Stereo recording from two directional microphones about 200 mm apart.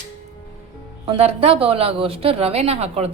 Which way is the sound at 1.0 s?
30° right (ahead or behind).